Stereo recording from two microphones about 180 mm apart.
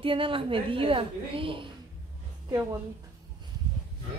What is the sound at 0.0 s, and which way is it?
A woman's voice, 30° right (ahead or behind).